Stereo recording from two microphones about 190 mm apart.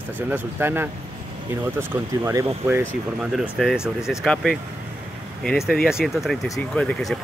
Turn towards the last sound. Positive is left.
turn(degrees=5)  # may be behind; listen again after turning